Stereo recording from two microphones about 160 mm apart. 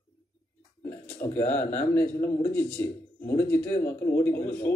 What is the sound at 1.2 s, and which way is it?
Speech, 15° left (ahead or behind).